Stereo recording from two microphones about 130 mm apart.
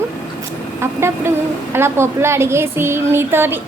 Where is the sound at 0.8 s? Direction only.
20° right (ahead or behind).